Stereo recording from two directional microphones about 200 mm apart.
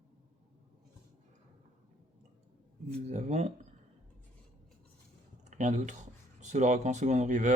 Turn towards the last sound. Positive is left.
turn(degrees=-35)  # may be behind; listen again after turning